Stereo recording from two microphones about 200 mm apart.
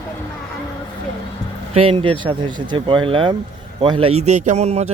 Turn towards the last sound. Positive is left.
turn(degrees=-35)  # may be behind; listen again after turning